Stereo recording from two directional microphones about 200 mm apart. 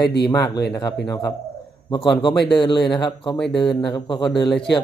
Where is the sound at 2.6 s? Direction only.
25° left (ahead or behind).